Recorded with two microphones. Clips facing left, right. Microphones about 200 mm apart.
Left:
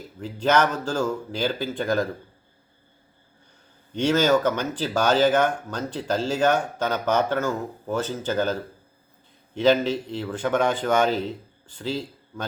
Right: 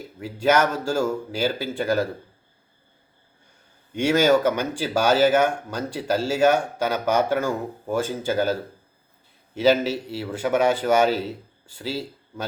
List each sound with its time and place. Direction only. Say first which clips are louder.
0.2 s a man's voice: right 1 dB; 10° right (ahead or behind)
3.9 s a man's voice: right 2 dB; 10° right (ahead or behind)
9.6 s a man's voice: even; 5° right (ahead or behind)